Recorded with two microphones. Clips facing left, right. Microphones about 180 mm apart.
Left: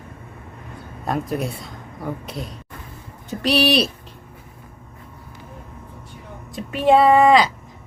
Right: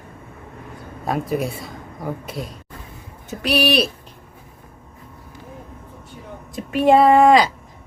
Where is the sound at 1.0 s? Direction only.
Centre (ahead or behind).